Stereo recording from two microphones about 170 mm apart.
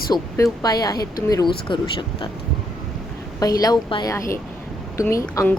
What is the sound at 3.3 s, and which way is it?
A woman's voice, 20° left (ahead or behind).